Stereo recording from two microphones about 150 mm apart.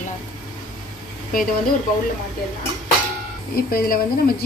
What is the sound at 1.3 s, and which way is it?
Speech, 65° left (ahead or behind).